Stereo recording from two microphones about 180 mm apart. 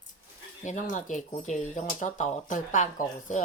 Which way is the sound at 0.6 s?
45° left (ahead or behind).